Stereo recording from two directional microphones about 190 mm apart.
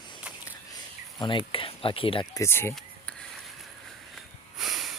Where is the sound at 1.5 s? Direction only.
30° left (ahead or behind).